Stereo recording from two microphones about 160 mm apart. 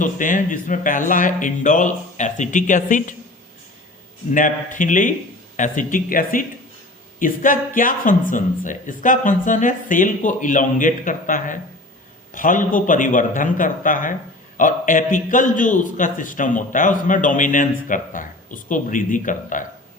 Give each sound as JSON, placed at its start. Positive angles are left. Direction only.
{"t": 0.0, "sound": "speech", "side_deg": 55}
{"t": 4.3, "sound": "a man's voice", "side_deg": 55}